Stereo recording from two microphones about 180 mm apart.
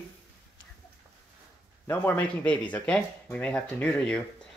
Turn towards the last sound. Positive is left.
turn(degrees=5)  # may be behind; listen again after turning